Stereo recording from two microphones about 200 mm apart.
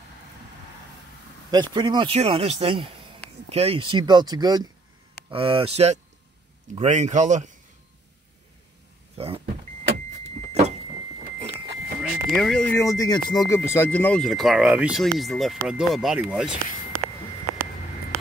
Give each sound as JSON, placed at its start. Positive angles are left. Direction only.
{"t": 1.5, "sound": "speech", "side_deg": -20}
{"t": 9.1, "sound": "power windows", "side_deg": -30}
{"t": 12.0, "sound": "a sound", "side_deg": 0}
{"t": 12.7, "sound": "speech", "side_deg": 15}